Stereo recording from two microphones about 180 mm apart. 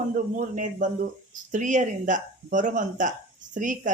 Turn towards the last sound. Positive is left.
turn(degrees=-45)  # may be behind; listen again after turning